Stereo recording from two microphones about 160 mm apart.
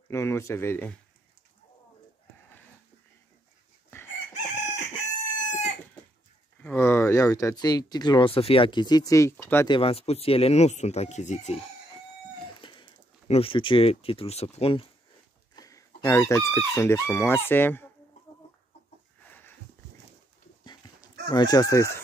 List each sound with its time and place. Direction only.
0.1 s speech: 15° left (ahead or behind)
4.3 s chicken: 45° left (ahead or behind)
6.6 s speech: 15° left (ahead or behind)
9.7 s speech: 35° left (ahead or behind)
12.5 s a sound: 30° left (ahead or behind)
13.3 s speech: 35° left (ahead or behind)
15.5 s speech: 20° left (ahead or behind)
21.3 s speech: 25° left (ahead or behind)